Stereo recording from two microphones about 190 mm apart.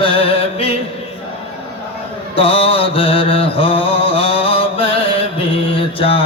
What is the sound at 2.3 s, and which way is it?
Mantra, 30° left (ahead or behind).